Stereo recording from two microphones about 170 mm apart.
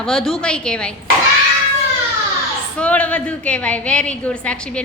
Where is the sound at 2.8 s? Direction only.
10° left (ahead or behind).